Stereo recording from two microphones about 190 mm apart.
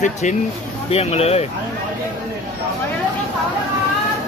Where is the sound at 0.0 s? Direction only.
40° left (ahead or behind).